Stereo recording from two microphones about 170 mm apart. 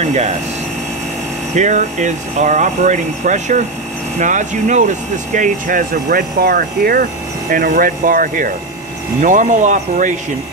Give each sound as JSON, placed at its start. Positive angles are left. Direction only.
{"t": 0.0, "sound": "air conditioning", "side_deg": -40}
{"t": 1.5, "sound": "speech", "side_deg": -45}